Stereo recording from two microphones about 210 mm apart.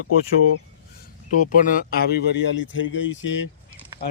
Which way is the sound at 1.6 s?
45° left (ahead or behind).